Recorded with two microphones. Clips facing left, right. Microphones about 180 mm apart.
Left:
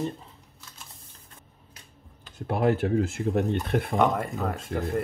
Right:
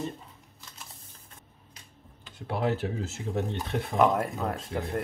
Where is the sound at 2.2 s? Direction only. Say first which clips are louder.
Left 5 dB; 50° left (ahead or behind).